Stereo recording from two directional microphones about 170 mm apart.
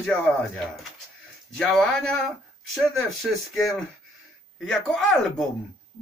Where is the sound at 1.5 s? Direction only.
5° left (ahead or behind).